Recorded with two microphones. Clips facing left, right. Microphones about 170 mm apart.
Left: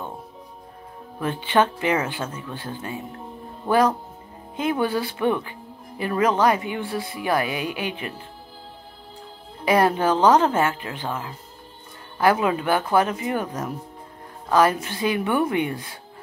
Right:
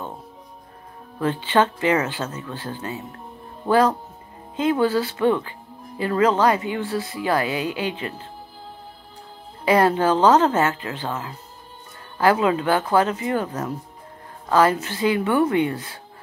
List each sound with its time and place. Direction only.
1.2 s speech: 15° left (ahead or behind)
9.7 s speech: 15° left (ahead or behind)